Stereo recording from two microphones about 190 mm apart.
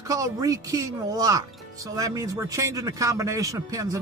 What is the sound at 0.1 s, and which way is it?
Speech, 20° right (ahead or behind).